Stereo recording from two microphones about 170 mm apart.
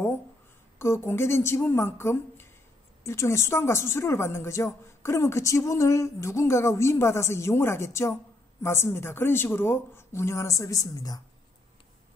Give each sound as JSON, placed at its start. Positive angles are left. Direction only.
{"t": 0.7, "sound": "speech", "side_deg": 15}